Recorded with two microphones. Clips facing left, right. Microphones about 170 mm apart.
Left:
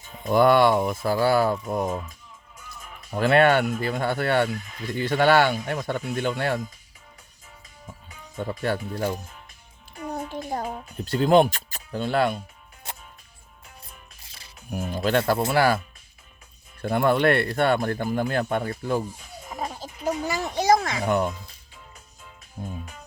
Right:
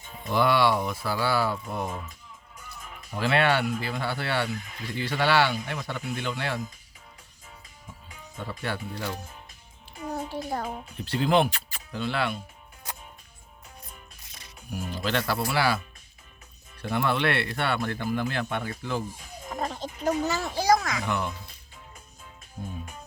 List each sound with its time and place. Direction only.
0.3 s speech: 50° left (ahead or behind)
3.1 s speech: 50° left (ahead or behind)
8.4 s speech: 45° left (ahead or behind)
10.3 s a child's voice: 20° left (ahead or behind)
10.9 s speech: 40° left (ahead or behind)
14.2 s music: 30° left (ahead or behind)
14.7 s speech: 50° left (ahead or behind)
16.8 s speech: 50° left (ahead or behind)
19.5 s speech: 5° left (ahead or behind); by 21.1 s 30° left (ahead or behind)
21.1 s speech: 45° left (ahead or behind)
22.6 s speech: 45° left (ahead or behind)